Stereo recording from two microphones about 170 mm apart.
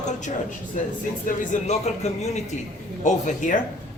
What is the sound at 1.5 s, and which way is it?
Speech, 45° left (ahead or behind).